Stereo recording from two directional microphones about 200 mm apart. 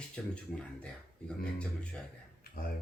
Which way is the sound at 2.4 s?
45° left (ahead or behind).